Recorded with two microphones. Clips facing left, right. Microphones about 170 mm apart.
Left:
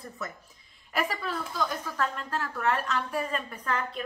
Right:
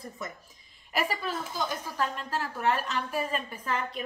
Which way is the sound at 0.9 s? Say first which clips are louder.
Even; 25° right (ahead or behind).